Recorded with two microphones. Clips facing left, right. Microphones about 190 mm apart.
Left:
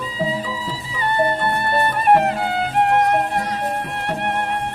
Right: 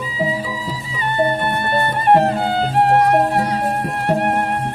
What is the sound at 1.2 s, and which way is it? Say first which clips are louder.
Music: right 2 dB; 20° right (ahead or behind).